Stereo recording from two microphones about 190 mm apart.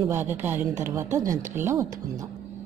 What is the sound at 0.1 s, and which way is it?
A woman's voice, 10° right (ahead or behind).